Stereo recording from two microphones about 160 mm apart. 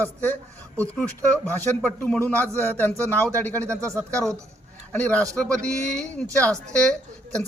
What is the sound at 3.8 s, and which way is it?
Speech, 20° right (ahead or behind).